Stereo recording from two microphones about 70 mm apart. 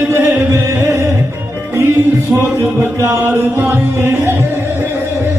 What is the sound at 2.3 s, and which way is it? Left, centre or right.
Music, right.